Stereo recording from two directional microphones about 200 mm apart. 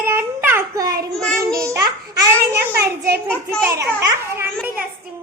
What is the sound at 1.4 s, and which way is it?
Babbling, 15° right (ahead or behind).